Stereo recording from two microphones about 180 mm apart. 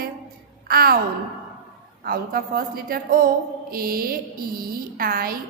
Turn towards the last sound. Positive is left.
turn(degrees=-55)  # may be behind; listen again after turning